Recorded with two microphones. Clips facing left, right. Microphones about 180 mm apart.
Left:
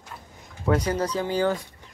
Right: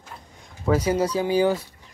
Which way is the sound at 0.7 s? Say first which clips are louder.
Right 3 dB; 10° right (ahead or behind).